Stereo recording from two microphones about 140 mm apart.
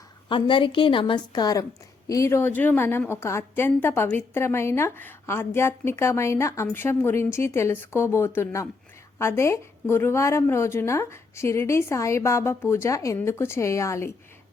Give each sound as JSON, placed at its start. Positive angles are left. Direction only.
{"t": 0.3, "sound": "a woman's voice", "side_deg": 35}